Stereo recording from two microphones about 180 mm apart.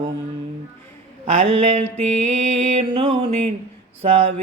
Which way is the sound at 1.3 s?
45° right (ahead or behind).